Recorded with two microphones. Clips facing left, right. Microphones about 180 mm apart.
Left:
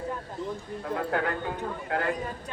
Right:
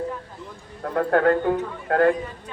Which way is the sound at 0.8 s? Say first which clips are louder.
Right 9 dB; 55° right (ahead or behind).